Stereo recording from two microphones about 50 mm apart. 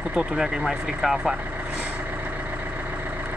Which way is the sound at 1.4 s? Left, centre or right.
Right.